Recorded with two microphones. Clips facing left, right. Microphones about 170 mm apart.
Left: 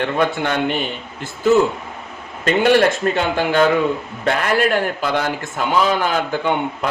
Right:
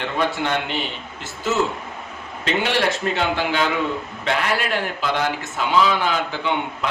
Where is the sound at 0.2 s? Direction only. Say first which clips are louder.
Left 1 dB; 50° left (ahead or behind).